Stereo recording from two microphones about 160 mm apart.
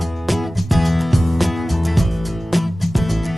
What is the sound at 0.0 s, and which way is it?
Music, centre (ahead or behind).